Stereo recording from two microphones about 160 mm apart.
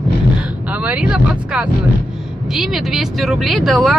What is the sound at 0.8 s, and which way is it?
Speech, 5° right (ahead or behind).